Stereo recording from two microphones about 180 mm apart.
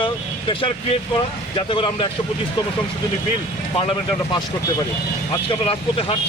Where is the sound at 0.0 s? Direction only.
30° left (ahead or behind).